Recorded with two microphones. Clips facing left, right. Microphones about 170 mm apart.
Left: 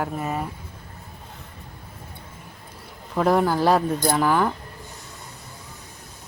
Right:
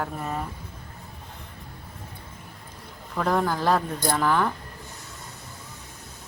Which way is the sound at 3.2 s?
10° left (ahead or behind).